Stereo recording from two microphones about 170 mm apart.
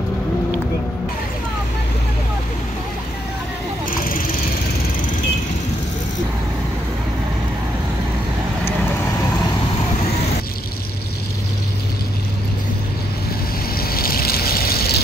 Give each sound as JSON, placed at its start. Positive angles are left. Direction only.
{"t": 13.7, "sound": "vehicle", "side_deg": 60}